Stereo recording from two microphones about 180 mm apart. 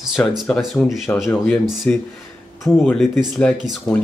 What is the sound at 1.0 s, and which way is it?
Speech, 15° left (ahead or behind).